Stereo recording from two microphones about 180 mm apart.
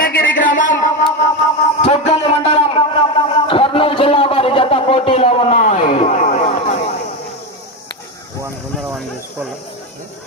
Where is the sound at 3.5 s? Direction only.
30° left (ahead or behind).